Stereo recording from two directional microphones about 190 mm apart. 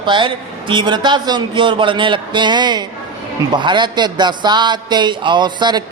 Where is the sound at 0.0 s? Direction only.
25° right (ahead or behind).